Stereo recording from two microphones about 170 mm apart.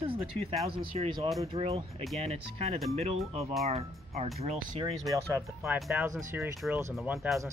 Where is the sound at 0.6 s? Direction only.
35° right (ahead or behind).